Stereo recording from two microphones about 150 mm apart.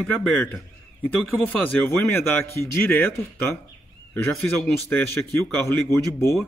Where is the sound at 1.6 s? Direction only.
15° left (ahead or behind).